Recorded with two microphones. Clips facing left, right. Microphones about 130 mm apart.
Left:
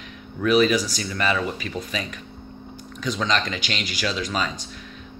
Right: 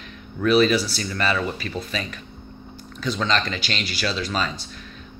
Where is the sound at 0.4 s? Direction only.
15° left (ahead or behind).